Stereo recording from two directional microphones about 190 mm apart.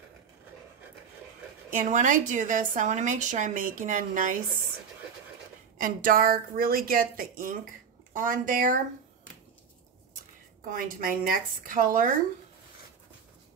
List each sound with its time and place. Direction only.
1.7 s a woman's voice: 40° right (ahead or behind)
5.8 s speech: 45° right (ahead or behind)
10.7 s speech: 45° right (ahead or behind)